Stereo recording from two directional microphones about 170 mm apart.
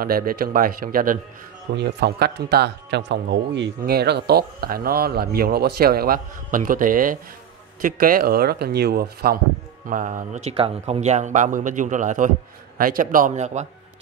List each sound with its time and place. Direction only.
0.0 s speech: 60° right (ahead or behind)
1.8 s a man's voice: 80° right
9.8 s speech: 50° right (ahead or behind)
13.3 s speech: 45° right (ahead or behind)